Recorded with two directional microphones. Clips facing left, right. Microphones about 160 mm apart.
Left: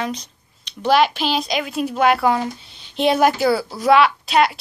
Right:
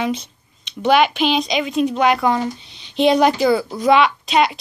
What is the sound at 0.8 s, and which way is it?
Speech, centre (ahead or behind).